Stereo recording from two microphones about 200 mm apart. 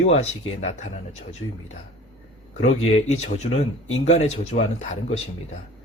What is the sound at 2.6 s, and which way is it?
Speech, 35° left (ahead or behind).